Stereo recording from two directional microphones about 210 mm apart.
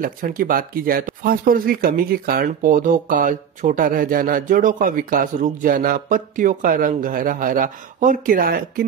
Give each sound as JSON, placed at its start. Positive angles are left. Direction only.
{"t": 0.0, "sound": "speech", "side_deg": -40}